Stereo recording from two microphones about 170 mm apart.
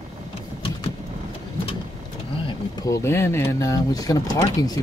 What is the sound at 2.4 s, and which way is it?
Speech, 20° left (ahead or behind).